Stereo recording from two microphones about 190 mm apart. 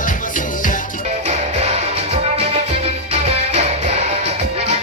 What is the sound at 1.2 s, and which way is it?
Music, 35° right (ahead or behind).